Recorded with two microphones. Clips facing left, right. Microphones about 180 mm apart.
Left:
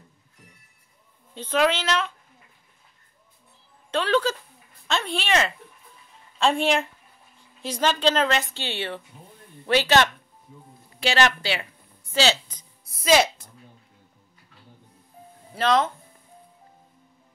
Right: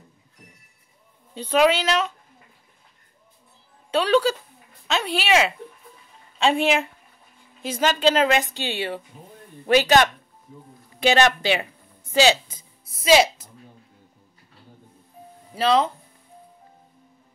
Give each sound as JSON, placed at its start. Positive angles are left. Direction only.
{"t": 1.3, "sound": "a woman's voice", "side_deg": -15}
{"t": 3.9, "sound": "a woman's voice", "side_deg": -10}
{"t": 11.0, "sound": "a sound", "side_deg": -20}
{"t": 15.5, "sound": "speech", "side_deg": -10}